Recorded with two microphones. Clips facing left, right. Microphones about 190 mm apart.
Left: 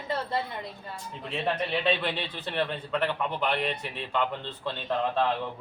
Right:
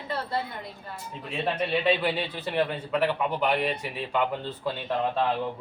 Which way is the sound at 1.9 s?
10° right (ahead or behind).